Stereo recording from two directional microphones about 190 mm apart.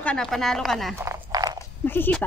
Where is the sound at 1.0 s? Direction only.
15° right (ahead or behind).